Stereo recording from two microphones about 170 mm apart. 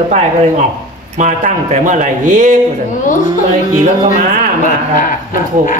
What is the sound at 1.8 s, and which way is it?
Speech, 50° right (ahead or behind).